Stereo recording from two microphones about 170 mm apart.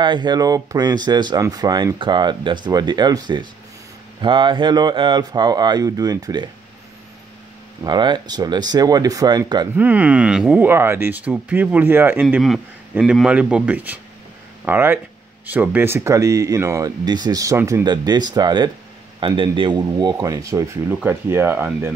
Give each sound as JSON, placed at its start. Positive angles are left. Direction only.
{"t": 0.0, "sound": "speech", "side_deg": -25}
{"t": 7.8, "sound": "speech", "side_deg": -25}
{"t": 9.8, "sound": "speech", "side_deg": -10}
{"t": 12.4, "sound": "speech", "side_deg": 0}